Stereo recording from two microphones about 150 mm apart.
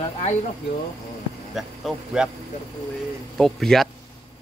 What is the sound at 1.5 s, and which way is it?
Speech, 5° right (ahead or behind).